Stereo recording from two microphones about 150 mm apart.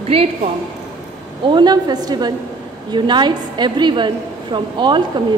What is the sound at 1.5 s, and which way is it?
A woman's voice, 30° right (ahead or behind).